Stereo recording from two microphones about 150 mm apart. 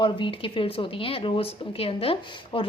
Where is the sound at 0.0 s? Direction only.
35° left (ahead or behind).